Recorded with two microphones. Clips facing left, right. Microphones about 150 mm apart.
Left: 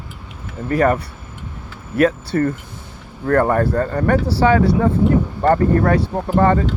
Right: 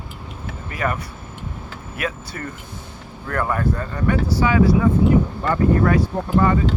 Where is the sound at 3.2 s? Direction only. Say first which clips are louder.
Left 8 dB; 45° left (ahead or behind).